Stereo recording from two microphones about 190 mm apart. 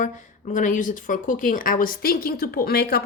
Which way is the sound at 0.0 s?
40° left (ahead or behind).